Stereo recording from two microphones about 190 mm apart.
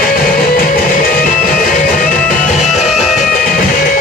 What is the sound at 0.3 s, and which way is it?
Music, 50° left (ahead or behind).